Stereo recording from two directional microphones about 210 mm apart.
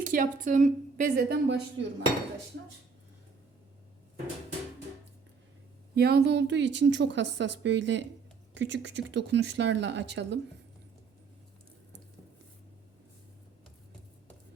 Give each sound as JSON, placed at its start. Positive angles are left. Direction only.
{"t": 0.0, "sound": "a woman's voice", "side_deg": -40}
{"t": 1.5, "sound": "a woman's voice", "side_deg": -55}
{"t": 5.9, "sound": "a woman's voice", "side_deg": -50}